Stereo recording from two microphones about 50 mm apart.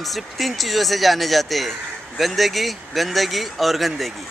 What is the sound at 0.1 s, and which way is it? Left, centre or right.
Speech, centre.